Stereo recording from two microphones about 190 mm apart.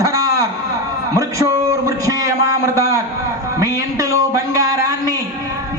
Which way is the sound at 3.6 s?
15° right (ahead or behind).